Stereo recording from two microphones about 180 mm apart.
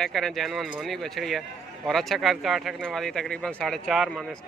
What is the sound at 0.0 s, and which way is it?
Speech, centre (ahead or behind).